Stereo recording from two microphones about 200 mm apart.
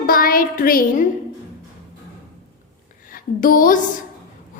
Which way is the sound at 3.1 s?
45° left (ahead or behind).